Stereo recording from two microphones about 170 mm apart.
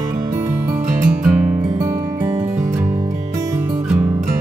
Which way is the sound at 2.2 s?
35° right (ahead or behind).